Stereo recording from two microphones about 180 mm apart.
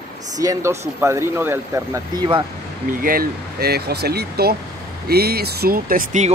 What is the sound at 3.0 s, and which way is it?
Speech, 55° right (ahead or behind).